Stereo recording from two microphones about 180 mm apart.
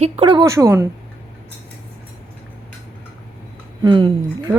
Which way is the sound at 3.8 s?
25° right (ahead or behind).